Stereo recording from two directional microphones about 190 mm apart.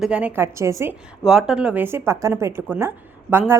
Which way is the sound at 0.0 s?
5° right (ahead or behind).